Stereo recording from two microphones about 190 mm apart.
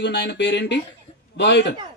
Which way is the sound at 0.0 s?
65° left (ahead or behind).